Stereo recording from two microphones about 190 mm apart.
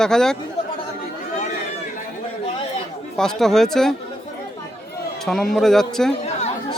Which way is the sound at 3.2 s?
Centre (ahead or behind).